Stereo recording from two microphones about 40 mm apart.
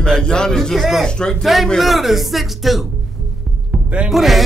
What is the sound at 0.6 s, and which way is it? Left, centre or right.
Speech, centre.